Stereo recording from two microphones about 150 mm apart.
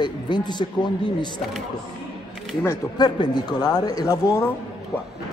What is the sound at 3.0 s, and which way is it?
A man's voice, 30° left (ahead or behind).